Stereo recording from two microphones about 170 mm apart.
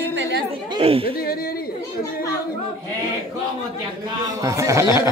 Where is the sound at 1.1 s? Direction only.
65° left (ahead or behind).